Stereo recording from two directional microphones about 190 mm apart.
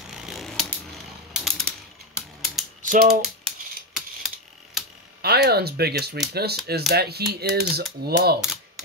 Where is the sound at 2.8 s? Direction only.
45° right (ahead or behind).